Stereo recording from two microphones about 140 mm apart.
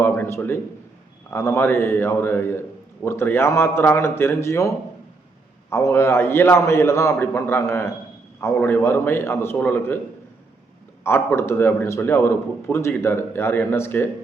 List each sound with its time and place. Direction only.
0.0 s a sound: 20° left (ahead or behind)
1.3 s a man's voice: 20° left (ahead or behind)
5.7 s a man's voice: 20° left (ahead or behind)
11.0 s a man's voice: 15° left (ahead or behind)